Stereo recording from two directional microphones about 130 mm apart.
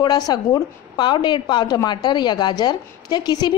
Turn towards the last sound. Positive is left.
turn(degrees=35)  # may be behind; listen again after turning